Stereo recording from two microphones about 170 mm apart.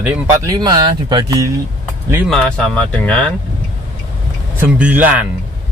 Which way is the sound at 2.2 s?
5° left (ahead or behind).